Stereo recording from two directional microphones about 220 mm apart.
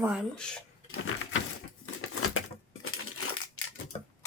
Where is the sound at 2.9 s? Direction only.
75° left (ahead or behind).